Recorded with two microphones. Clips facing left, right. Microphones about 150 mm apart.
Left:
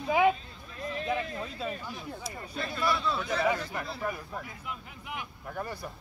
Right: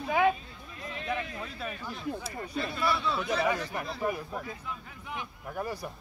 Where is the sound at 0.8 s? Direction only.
35° left (ahead or behind).